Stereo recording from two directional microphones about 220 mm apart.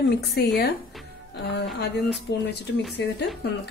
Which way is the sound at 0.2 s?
50° left (ahead or behind).